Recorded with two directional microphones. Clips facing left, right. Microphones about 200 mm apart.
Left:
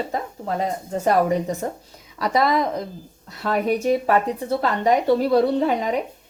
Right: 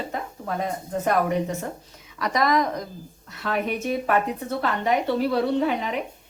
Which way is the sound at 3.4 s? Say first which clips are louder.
Left 5 dB; 40° left (ahead or behind).